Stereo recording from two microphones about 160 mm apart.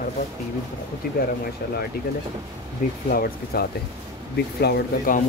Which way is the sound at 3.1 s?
70° left (ahead or behind).